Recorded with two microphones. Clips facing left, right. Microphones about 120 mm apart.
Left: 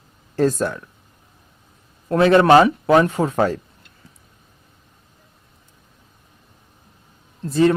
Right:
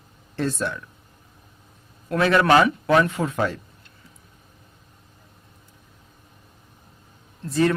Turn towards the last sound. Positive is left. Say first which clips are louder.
# left 5 dB
turn(degrees=25)  # may be behind; listen again after turning